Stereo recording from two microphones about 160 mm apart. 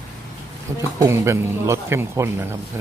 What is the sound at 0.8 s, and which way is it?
Speech, 20° right (ahead or behind).